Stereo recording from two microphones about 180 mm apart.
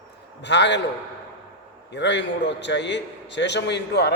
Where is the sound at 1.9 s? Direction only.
75° left (ahead or behind).